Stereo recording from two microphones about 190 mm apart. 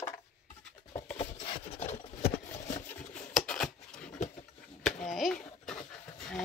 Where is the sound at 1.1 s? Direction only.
30° left (ahead or behind).